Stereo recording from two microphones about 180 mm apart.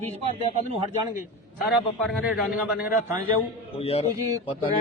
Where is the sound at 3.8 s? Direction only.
35° left (ahead or behind).